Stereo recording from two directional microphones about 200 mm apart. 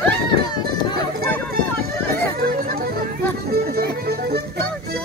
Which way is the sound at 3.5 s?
50° right (ahead or behind).